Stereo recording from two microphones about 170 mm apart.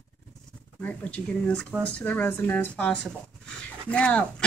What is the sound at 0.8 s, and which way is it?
Speech, 10° left (ahead or behind).